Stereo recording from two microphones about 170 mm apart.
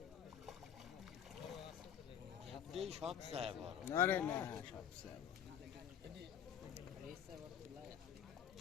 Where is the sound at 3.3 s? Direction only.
35° right (ahead or behind).